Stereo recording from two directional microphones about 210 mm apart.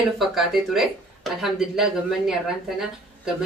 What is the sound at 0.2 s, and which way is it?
Speech, centre (ahead or behind).